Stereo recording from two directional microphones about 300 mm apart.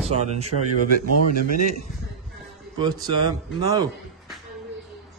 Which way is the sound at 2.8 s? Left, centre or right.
Centre.